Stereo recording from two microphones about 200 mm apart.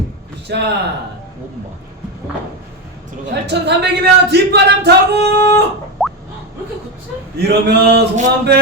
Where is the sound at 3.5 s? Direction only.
55° right (ahead or behind).